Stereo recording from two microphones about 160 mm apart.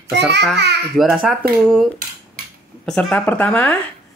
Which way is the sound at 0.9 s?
Centre (ahead or behind).